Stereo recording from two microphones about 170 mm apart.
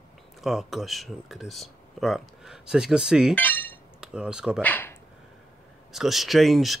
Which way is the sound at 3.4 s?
10° left (ahead or behind).